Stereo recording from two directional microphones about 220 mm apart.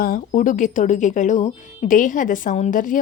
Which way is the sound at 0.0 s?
40° left (ahead or behind).